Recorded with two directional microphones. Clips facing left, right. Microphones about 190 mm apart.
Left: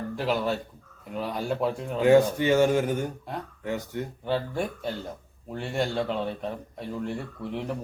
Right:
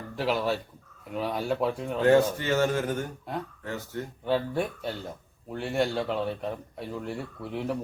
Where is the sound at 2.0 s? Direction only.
15° left (ahead or behind).